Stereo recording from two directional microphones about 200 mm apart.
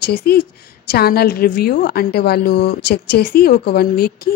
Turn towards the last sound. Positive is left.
turn(degrees=50)  # may be behind; listen again after turning